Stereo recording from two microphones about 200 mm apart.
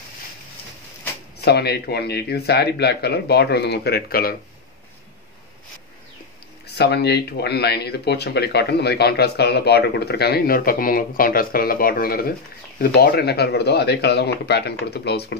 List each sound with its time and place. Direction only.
1.4 s speech: 55° left (ahead or behind)
6.8 s speech: 55° left (ahead or behind)